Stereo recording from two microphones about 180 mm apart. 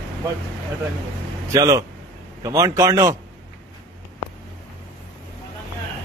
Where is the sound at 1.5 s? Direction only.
20° right (ahead or behind).